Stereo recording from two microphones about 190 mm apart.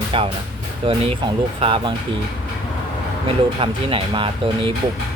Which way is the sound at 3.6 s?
25° right (ahead or behind).